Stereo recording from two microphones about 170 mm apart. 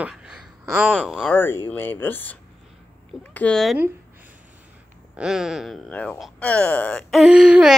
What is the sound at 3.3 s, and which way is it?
Speech, 5° left (ahead or behind).